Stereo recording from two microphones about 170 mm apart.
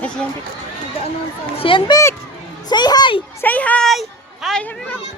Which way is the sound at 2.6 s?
25° left (ahead or behind).